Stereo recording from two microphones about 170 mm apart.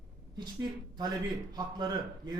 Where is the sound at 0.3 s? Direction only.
25° right (ahead or behind).